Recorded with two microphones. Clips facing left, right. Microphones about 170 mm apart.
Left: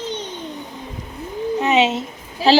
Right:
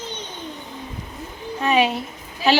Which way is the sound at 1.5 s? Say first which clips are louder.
Left 2 dB; 20° left (ahead or behind).